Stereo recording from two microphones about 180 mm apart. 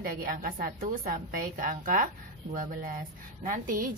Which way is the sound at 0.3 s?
50° right (ahead or behind).